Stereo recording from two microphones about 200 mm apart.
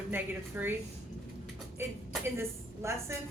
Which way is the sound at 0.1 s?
10° right (ahead or behind).